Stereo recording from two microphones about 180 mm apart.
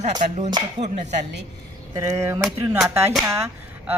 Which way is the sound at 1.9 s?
20° right (ahead or behind).